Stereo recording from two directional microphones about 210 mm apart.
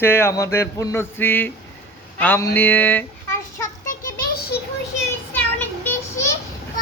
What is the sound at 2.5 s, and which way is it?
Speech, 10° left (ahead or behind).